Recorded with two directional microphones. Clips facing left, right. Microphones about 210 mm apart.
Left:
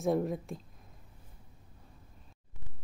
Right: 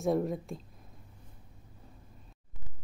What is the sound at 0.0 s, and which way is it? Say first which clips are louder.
Speech: right 1 dB; centre (ahead or behind).